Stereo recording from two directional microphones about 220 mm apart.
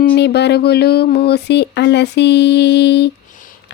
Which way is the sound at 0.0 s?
45° left (ahead or behind).